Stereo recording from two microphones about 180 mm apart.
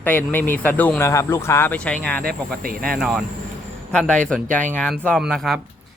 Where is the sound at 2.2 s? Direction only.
55° right (ahead or behind).